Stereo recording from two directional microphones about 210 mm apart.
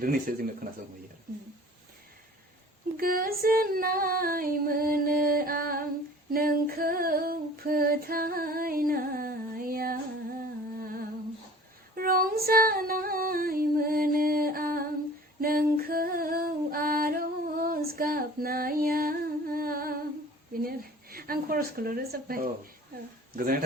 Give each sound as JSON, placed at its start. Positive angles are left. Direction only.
{"t": 0.0, "sound": "speech", "side_deg": -40}
{"t": 3.0, "sound": "music", "side_deg": -45}
{"t": 6.3, "sound": "female singing", "side_deg": -45}
{"t": 20.5, "sound": "speech", "side_deg": -45}